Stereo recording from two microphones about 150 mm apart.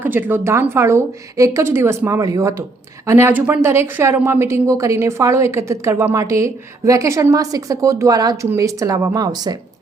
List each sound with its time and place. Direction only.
0.0 s a woman's voice: 15° right (ahead or behind)